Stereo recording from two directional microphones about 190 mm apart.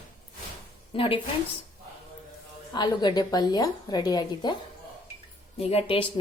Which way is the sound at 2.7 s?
20° left (ahead or behind).